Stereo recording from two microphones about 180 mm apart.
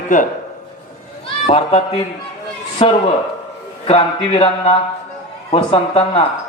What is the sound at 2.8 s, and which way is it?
Speech, 30° left (ahead or behind).